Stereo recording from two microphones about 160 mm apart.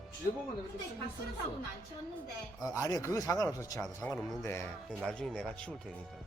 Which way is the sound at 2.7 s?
25° left (ahead or behind).